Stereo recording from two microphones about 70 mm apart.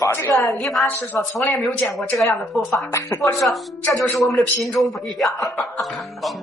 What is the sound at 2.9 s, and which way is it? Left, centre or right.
Speech, left.